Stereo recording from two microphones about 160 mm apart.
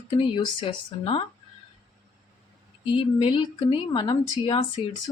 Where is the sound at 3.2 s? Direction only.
30° left (ahead or behind).